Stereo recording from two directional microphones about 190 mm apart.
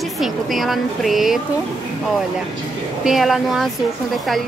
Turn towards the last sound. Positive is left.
turn(degrees=0)  # may be behind; listen again after turning